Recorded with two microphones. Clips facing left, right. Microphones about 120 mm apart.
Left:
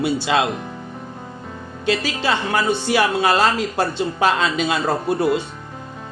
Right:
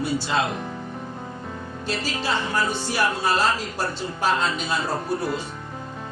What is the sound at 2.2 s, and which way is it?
A man's voice, 70° left (ahead or behind).